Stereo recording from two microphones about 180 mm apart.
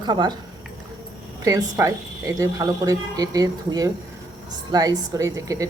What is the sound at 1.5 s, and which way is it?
Speech, 20° right (ahead or behind).